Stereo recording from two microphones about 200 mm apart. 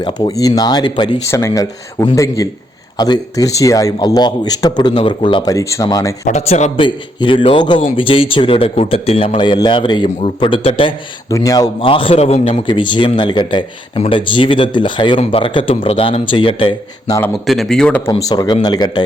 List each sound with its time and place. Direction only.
0.0 s a man's voice: 20° left (ahead or behind)
6.2 s a man's voice: 35° left (ahead or behind)
17.4 s speech: centre (ahead or behind)
18.1 s a man's voice: 20° left (ahead or behind)